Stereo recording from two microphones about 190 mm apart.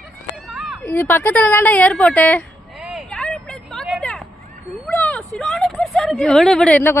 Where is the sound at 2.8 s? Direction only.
5° right (ahead or behind).